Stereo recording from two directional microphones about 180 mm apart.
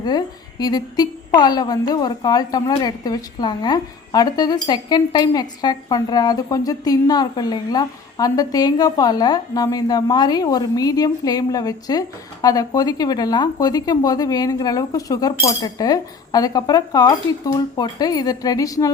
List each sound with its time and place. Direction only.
0.0 s a woman's voice: 25° left (ahead or behind)